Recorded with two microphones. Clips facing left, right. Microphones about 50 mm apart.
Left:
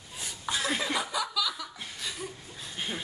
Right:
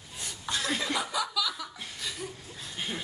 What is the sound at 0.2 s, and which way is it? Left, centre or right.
Chuckle, centre.